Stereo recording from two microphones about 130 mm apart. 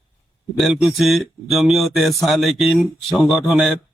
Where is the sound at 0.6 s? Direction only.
5° right (ahead or behind).